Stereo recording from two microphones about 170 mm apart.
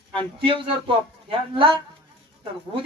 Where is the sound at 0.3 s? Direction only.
30° right (ahead or behind).